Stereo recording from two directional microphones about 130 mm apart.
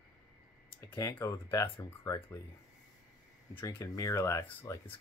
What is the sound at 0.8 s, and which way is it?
Speech, 25° left (ahead or behind).